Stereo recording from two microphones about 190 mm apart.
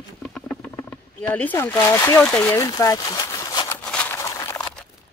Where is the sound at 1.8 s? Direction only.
15° left (ahead or behind).